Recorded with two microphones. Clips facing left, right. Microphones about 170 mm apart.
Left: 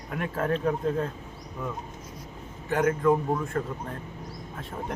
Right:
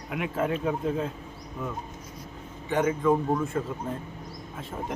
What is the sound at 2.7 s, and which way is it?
Speech, centre (ahead or behind).